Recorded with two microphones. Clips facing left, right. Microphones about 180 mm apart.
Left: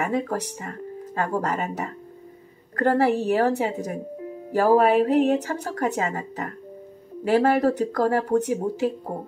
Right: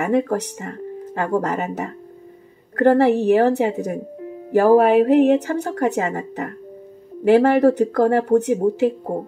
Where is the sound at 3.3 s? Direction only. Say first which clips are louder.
Right 6 dB; 55° right (ahead or behind).